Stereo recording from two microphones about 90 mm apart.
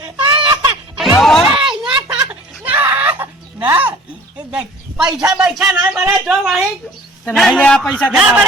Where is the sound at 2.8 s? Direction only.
20° right (ahead or behind).